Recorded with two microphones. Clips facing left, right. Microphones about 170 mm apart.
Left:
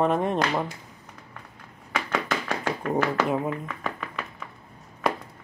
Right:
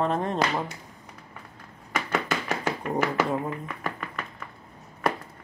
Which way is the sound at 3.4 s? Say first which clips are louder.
Left 2 dB; 10° right (ahead or behind).